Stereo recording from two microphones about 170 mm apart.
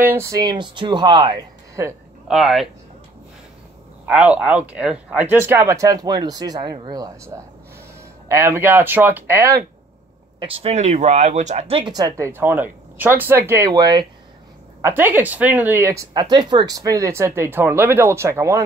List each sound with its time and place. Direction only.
0.0 s speech: 15° right (ahead or behind)
2.2 s speech: centre (ahead or behind)
4.0 s speech: 5° right (ahead or behind); by 7.2 s 25° right (ahead or behind)
8.3 s speech: 15° right (ahead or behind)
10.4 s speech: 35° right (ahead or behind)
11.9 s speech: 20° right (ahead or behind)